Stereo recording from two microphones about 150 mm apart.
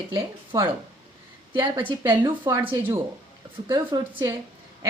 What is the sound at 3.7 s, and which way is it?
Speech, 25° right (ahead or behind).